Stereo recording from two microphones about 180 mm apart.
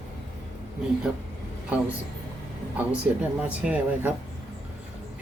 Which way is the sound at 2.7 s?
10° right (ahead or behind).